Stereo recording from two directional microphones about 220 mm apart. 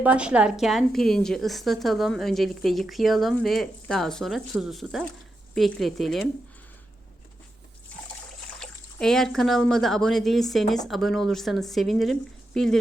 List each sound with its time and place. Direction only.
0.0 s a woman's voice: 5° right (ahead or behind)
8.5 s a woman's voice: 5° left (ahead or behind)